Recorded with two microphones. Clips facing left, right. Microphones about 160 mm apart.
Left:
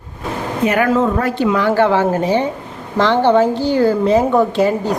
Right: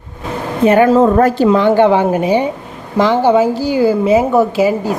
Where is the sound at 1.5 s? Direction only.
20° right (ahead or behind).